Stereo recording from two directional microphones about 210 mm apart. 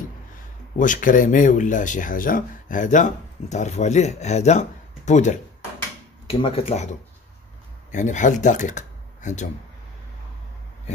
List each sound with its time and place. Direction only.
0.7 s speech: 40° left (ahead or behind)